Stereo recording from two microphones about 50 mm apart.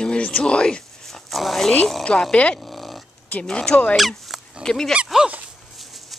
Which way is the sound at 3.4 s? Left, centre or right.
Centre.